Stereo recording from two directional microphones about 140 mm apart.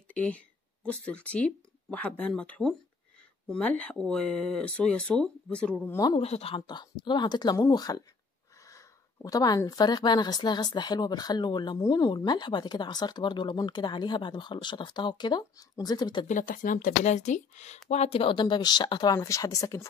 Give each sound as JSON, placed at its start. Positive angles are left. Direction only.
{"t": 0.1, "sound": "speech", "side_deg": 10}
{"t": 6.1, "sound": "speech", "side_deg": 45}
{"t": 6.6, "sound": "speech", "side_deg": 30}
{"t": 16.3, "sound": "speech", "side_deg": 75}